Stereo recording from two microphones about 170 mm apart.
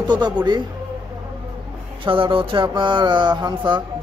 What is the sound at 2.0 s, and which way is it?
Speech, 30° right (ahead or behind).